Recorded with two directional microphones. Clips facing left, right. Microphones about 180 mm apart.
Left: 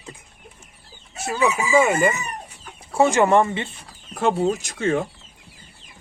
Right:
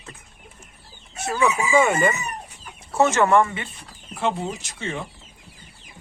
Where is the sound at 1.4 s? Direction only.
5° left (ahead or behind).